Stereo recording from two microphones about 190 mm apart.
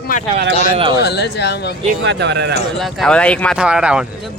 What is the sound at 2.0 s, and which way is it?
Speech, 65° right (ahead or behind).